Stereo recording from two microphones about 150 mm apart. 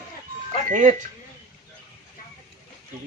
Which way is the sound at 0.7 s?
55° right (ahead or behind).